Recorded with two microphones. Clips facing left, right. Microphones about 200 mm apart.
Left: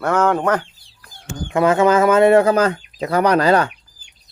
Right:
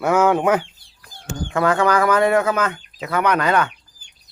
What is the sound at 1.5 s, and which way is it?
Speech, 20° left (ahead or behind).